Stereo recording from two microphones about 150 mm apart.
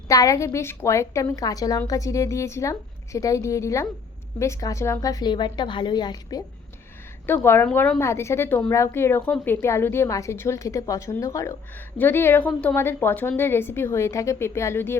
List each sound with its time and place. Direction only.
0.1 s a woman's voice: 20° left (ahead or behind)
7.3 s a woman's voice: 15° left (ahead or behind)